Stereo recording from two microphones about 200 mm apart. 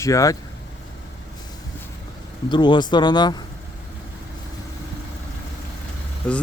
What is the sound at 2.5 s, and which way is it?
Speech, 20° left (ahead or behind).